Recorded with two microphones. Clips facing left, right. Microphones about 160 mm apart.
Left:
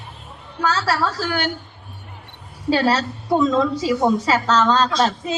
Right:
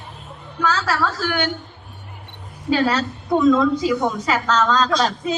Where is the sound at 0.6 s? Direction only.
30° left (ahead or behind).